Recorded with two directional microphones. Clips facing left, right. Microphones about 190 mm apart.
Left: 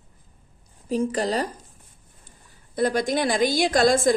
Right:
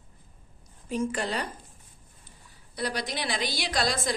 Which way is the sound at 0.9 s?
35° left (ahead or behind).